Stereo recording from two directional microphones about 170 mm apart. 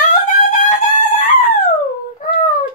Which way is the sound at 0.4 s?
50° left (ahead or behind).